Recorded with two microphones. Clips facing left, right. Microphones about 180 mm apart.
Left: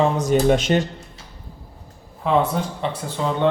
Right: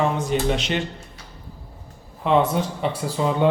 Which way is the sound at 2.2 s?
Centre (ahead or behind).